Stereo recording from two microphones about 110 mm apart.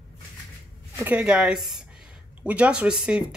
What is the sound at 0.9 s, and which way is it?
Speech, 15° right (ahead or behind).